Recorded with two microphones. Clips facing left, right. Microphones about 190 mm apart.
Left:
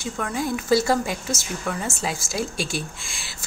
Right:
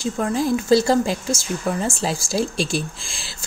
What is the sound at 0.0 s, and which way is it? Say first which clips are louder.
A woman's voice: right 5 dB; 30° right (ahead or behind).